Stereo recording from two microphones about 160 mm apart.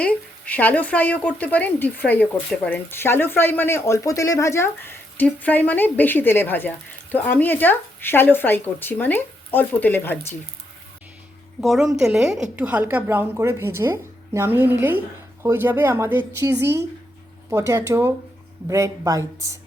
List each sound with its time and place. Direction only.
0.0 s speech: 10° left (ahead or behind)
11.6 s a woman's voice: centre (ahead or behind); by 19.5 s 20° right (ahead or behind)